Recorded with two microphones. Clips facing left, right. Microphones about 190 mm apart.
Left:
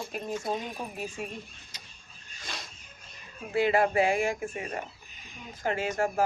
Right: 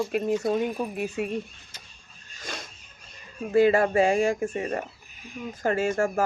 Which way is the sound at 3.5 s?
45° right (ahead or behind).